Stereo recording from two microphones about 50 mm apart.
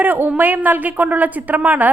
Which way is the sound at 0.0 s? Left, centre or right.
Right.